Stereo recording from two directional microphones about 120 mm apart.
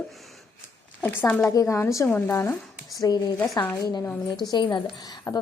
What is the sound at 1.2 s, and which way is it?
Speech, 5° left (ahead or behind).